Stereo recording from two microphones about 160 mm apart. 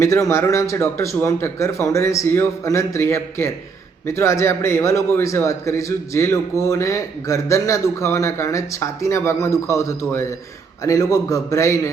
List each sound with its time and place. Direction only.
0.0 s a man's voice: 20° left (ahead or behind)